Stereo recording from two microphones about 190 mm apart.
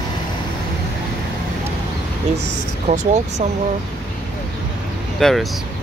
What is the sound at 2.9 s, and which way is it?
Speech, 40° right (ahead or behind).